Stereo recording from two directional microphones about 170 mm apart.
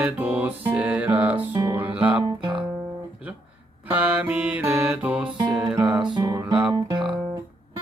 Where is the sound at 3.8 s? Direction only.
10° right (ahead or behind).